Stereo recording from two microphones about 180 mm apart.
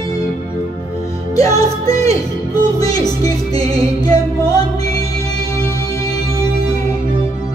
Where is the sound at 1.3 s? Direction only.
20° left (ahead or behind).